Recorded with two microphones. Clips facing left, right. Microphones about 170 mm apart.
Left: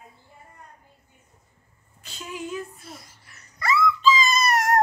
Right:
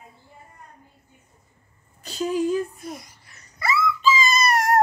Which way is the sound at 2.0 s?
40° right (ahead or behind).